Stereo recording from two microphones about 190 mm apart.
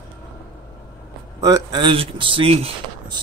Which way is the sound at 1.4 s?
20° right (ahead or behind).